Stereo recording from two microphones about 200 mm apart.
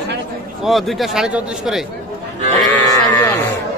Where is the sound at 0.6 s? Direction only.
Centre (ahead or behind).